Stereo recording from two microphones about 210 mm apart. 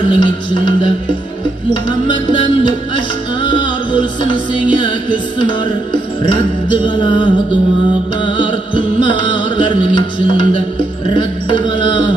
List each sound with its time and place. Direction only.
0.1 s speech: 25° left (ahead or behind)
3.4 s music: 25° left (ahead or behind)
6.7 s speech: 20° left (ahead or behind)
8.3 s music: 25° left (ahead or behind)